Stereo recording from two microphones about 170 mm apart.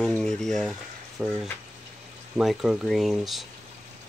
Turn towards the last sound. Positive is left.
turn(degrees=0)  # may be behind; listen again after turning